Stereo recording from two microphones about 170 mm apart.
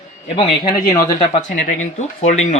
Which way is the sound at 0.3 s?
25° left (ahead or behind).